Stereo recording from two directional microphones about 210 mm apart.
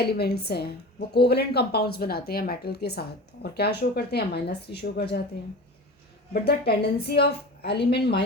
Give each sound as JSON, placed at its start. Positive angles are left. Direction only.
{"t": 0.0, "sound": "speech", "side_deg": 50}
{"t": 6.3, "sound": "speech", "side_deg": 50}